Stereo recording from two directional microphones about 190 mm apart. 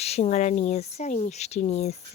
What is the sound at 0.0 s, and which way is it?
Speech, 35° left (ahead or behind).